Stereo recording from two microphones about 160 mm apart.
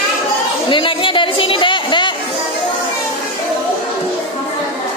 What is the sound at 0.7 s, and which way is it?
Chatter, 30° left (ahead or behind).